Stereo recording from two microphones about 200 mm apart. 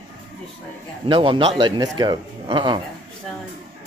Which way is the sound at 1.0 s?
25° right (ahead or behind).